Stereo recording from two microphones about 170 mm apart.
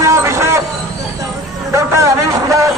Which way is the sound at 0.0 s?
15° right (ahead or behind).